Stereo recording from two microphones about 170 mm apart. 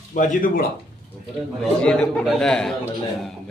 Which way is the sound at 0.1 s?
55° left (ahead or behind).